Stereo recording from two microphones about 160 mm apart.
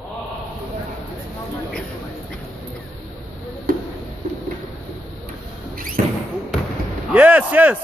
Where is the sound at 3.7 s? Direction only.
65° right (ahead or behind).